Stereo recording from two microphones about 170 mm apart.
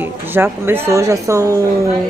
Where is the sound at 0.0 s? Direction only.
10° right (ahead or behind).